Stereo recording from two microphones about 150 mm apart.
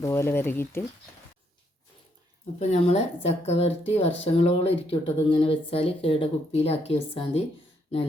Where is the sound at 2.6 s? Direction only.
45° left (ahead or behind).